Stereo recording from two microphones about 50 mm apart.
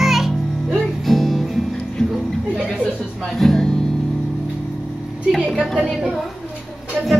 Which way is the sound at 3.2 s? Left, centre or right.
Centre.